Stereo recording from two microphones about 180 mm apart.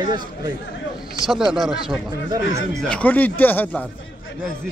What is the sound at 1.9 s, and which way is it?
Speech, 20° right (ahead or behind).